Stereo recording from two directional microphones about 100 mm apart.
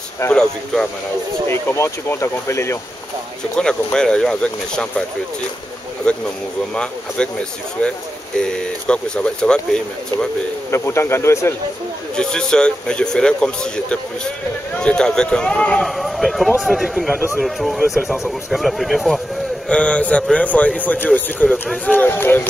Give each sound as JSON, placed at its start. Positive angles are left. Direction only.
{"t": 0.3, "sound": "speech", "side_deg": 5}
{"t": 1.5, "sound": "speech", "side_deg": 25}
{"t": 3.5, "sound": "speech", "side_deg": 10}
{"t": 6.0, "sound": "speech", "side_deg": 10}
{"t": 10.7, "sound": "speech", "side_deg": 25}
{"t": 12.2, "sound": "speech", "side_deg": 5}
{"t": 19.7, "sound": "speech", "side_deg": 10}
{"t": 21.5, "sound": "speech", "side_deg": 5}
{"t": 21.9, "sound": "speech", "side_deg": 20}